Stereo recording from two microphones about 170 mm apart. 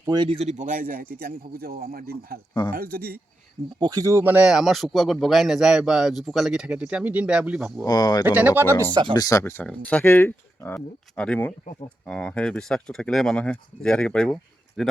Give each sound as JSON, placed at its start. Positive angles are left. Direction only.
{"t": 0.0, "sound": "a man's voice", "side_deg": -25}
{"t": 3.8, "sound": "speech", "side_deg": -20}
{"t": 7.9, "sound": "speech", "side_deg": 25}
{"t": 8.2, "sound": "speech", "side_deg": -10}
{"t": 9.1, "sound": "speech", "side_deg": 20}